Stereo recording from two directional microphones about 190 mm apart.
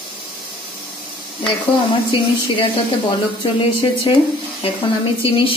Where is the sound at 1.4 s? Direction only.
25° left (ahead or behind).